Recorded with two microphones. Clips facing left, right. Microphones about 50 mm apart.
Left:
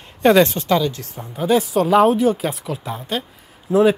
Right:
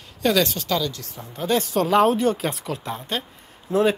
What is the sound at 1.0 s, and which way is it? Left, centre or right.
Speech, left.